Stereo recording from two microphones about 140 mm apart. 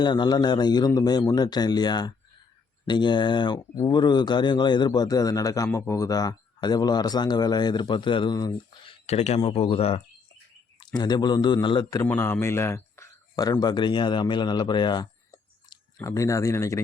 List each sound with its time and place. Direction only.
0.0 s speech: 35° left (ahead or behind)
10.8 s speech: 30° left (ahead or behind)
12.0 s speech: 15° left (ahead or behind)